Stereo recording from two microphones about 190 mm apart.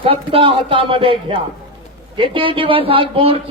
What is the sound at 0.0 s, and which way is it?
A man's voice, 30° right (ahead or behind).